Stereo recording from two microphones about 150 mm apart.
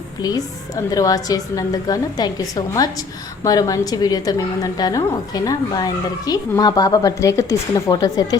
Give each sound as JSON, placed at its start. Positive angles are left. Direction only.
{"t": 0.2, "sound": "a woman's voice", "side_deg": 25}